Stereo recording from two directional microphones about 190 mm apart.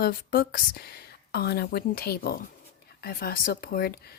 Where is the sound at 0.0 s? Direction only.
50° left (ahead or behind).